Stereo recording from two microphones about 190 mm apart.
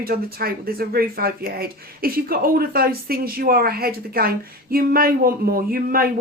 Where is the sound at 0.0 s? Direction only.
50° right (ahead or behind).